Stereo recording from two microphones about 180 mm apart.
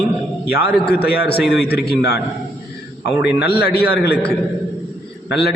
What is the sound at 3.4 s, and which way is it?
Speech, 60° left (ahead or behind).